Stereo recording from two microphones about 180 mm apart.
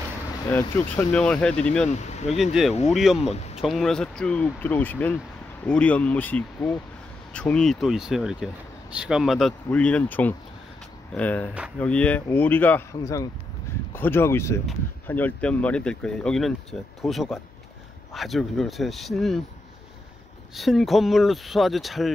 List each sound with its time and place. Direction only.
0.5 s speech: 10° left (ahead or behind)
1.9 s speech: 40° left (ahead or behind)
2.6 s speech: 5° right (ahead or behind)
20.5 s speech: centre (ahead or behind)